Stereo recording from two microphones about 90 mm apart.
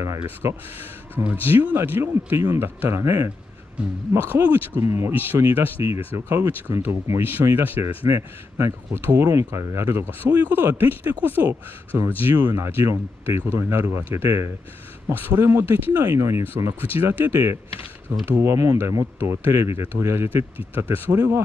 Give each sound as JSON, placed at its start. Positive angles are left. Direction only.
{"t": 0.2, "sound": "speech", "side_deg": -30}
{"t": 4.1, "sound": "speech", "side_deg": -20}
{"t": 4.8, "sound": "speech", "side_deg": -30}